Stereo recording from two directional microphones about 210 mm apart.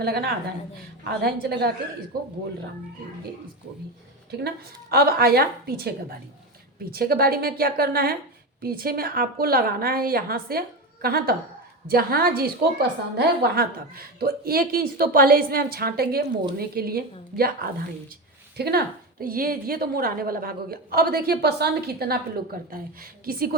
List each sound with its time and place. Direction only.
0.0 s a woman's voice: 50° right (ahead or behind)
4.3 s a woman's voice: 50° right (ahead or behind)